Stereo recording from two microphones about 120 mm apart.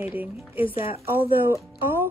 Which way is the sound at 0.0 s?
15° right (ahead or behind).